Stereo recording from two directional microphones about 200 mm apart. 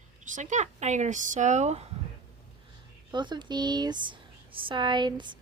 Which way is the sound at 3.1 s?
20° right (ahead or behind).